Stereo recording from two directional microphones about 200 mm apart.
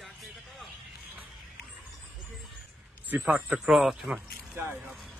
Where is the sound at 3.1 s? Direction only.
5° right (ahead or behind).